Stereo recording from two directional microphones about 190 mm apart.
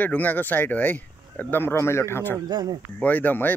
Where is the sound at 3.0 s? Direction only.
10° left (ahead or behind).